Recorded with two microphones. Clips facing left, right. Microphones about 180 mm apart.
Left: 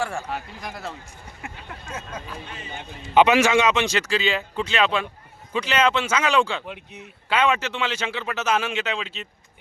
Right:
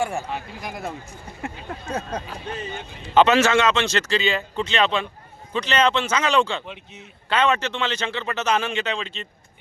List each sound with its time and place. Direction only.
0.0 s speech: 20° right (ahead or behind)
1.4 s speech: 35° right (ahead or behind)
3.2 s a man's voice: 15° left (ahead or behind)